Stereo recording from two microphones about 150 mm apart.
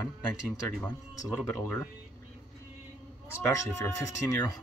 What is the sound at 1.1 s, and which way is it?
Speech, 20° left (ahead or behind).